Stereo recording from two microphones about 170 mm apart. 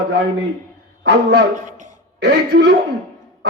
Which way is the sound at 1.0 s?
75° right (ahead or behind).